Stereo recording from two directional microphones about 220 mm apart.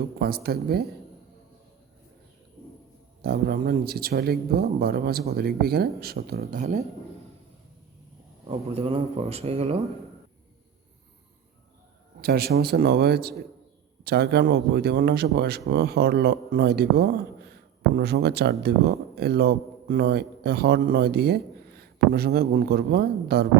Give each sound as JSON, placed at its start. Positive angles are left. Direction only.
{"t": 0.2, "sound": "a man's voice", "side_deg": -45}
{"t": 3.2, "sound": "a man's voice", "side_deg": -45}
{"t": 8.4, "sound": "speech", "side_deg": -25}
{"t": 12.2, "sound": "a man's voice", "side_deg": -45}